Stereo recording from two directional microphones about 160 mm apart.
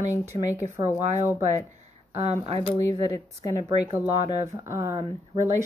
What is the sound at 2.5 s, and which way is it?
Speech, 25° left (ahead or behind).